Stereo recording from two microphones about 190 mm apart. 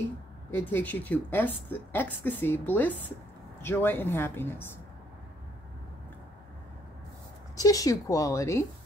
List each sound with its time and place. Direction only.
0.5 s a woman's voice: 10° left (ahead or behind)
7.5 s a woman's voice: 20° left (ahead or behind)